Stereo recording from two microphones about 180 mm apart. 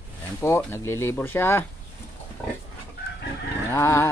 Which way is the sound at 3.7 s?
15° left (ahead or behind).